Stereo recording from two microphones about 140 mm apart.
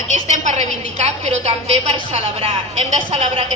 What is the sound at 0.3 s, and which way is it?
A woman's voice, 55° right (ahead or behind).